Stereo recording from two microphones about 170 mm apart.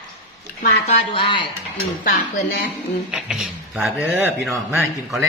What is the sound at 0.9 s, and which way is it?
Speech, 35° left (ahead or behind).